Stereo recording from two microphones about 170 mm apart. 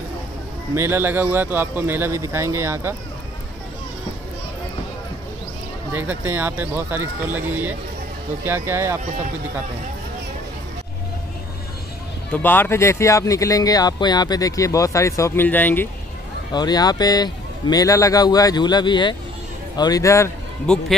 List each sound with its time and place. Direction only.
0.7 s speech: 15° right (ahead or behind)
5.9 s speech: 10° right (ahead or behind)
12.3 s speech: 10° left (ahead or behind)
16.5 s a man's voice: 25° left (ahead or behind)
20.7 s speech: 5° left (ahead or behind)